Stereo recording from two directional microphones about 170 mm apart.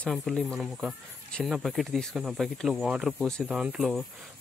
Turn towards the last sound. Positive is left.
turn(degrees=0)  # may be behind; listen again after turning